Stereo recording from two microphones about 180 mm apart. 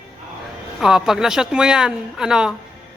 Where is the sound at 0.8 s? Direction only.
Centre (ahead or behind).